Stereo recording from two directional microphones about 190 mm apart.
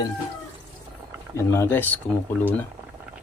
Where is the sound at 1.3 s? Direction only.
15° left (ahead or behind).